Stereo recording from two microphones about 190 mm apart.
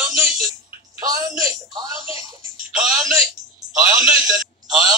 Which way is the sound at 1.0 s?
20° right (ahead or behind).